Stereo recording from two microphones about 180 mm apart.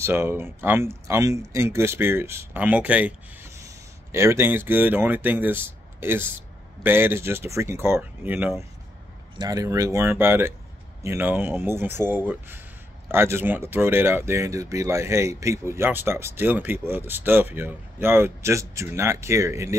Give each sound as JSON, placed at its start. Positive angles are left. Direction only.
{"t": 0.0, "sound": "speech", "side_deg": -15}